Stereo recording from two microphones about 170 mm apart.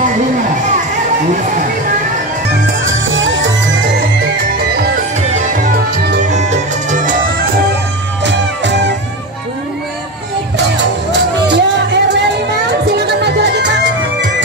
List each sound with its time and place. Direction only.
2.5 s music: 90° right
6.2 s music: 45° right (ahead or behind)
8.2 s music: 90° right
10.8 s music: 90° right
12.8 s music: 75° right (ahead or behind)